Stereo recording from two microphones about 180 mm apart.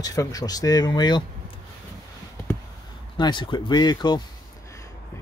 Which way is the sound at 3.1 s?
25° left (ahead or behind).